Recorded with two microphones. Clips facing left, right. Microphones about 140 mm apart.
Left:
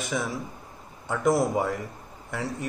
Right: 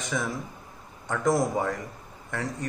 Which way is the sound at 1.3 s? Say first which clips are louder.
Left 1 dB; 10° left (ahead or behind).